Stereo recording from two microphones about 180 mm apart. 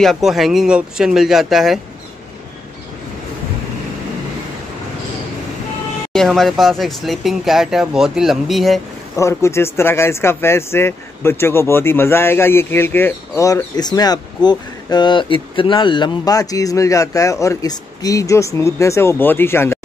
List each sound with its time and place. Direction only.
0.0 s speech: centre (ahead or behind)
6.1 s speech: centre (ahead or behind)
9.1 s speech: 15° left (ahead or behind)